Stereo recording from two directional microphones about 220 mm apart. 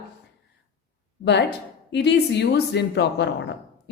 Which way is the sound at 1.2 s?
50° left (ahead or behind).